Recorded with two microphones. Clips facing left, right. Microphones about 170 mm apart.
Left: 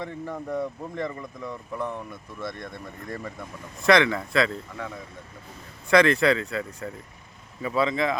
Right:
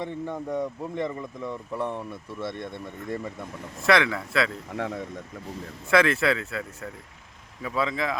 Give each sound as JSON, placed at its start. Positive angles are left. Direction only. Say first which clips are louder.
{"t": 0.0, "sound": "speech", "louder": "right 2 dB", "side_deg": -20}
{"t": 3.8, "sound": "speech", "louder": "left 2 dB", "side_deg": 0}
{"t": 4.7, "sound": "speech", "louder": "right 5 dB", "side_deg": -65}
{"t": 5.9, "sound": "speech", "louder": "left 3 dB", "side_deg": -5}